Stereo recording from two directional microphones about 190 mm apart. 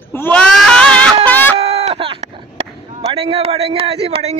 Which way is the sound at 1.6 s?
30° right (ahead or behind).